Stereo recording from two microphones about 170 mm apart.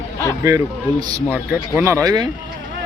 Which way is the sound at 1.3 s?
10° right (ahead or behind).